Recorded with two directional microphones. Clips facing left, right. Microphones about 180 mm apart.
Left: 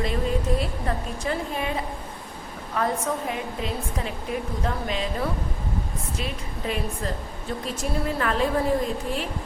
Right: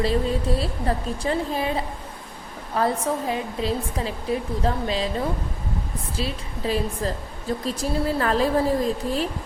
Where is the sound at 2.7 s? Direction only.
30° right (ahead or behind).